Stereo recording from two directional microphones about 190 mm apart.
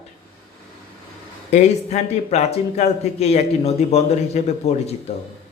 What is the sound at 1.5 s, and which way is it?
A man's voice, 35° left (ahead or behind).